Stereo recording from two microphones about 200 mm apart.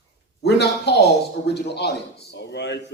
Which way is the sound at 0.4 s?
55° left (ahead or behind).